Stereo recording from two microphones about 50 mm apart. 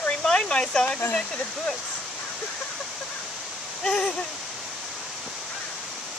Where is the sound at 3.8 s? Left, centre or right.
Centre.